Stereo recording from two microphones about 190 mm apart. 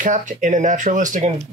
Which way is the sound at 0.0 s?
40° right (ahead or behind).